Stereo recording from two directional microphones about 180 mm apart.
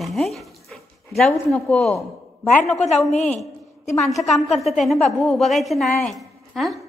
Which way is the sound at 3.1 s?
40° left (ahead or behind).